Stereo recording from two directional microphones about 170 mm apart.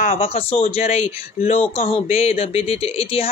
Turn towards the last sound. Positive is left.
turn(degrees=35)  # may be behind; listen again after turning